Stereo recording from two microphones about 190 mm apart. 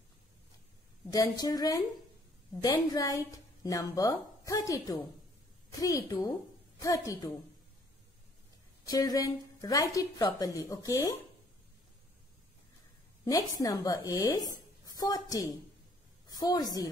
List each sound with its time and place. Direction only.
1.1 s a woman's voice: 20° left (ahead or behind)
8.8 s a woman's voice: 20° left (ahead or behind)
13.2 s a woman's voice: 20° left (ahead or behind)